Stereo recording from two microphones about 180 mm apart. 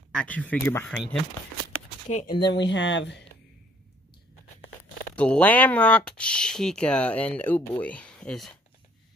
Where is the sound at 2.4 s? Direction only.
80° left.